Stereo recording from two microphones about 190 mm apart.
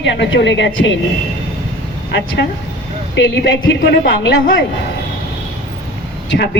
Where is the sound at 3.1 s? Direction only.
70° left (ahead or behind).